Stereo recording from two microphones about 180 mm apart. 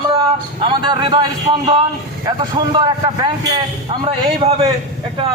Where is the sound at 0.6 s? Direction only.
25° right (ahead or behind).